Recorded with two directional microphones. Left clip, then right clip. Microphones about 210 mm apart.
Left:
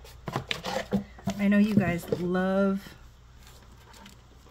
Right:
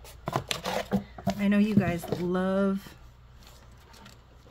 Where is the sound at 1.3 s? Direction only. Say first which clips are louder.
Left 1 dB; 5° right (ahead or behind).